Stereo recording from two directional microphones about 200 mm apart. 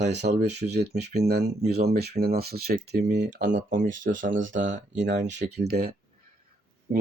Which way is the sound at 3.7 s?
40° right (ahead or behind).